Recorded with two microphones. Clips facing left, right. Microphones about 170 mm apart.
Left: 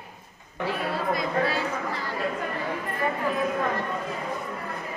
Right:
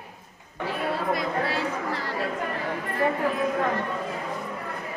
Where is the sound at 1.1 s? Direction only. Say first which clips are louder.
Left 1 dB; 70° right (ahead or behind).